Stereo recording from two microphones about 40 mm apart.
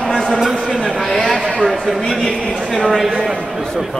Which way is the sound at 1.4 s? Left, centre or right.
Centre.